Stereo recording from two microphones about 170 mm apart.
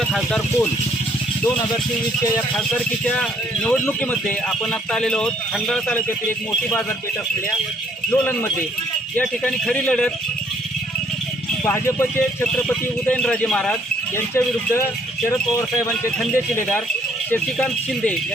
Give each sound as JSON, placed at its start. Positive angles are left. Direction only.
{"t": 0.1, "sound": "speech", "side_deg": 5}
{"t": 3.0, "sound": "speech", "side_deg": 5}
{"t": 8.1, "sound": "speech", "side_deg": 10}
{"t": 11.6, "sound": "speech", "side_deg": 15}
{"t": 16.1, "sound": "speech", "side_deg": 10}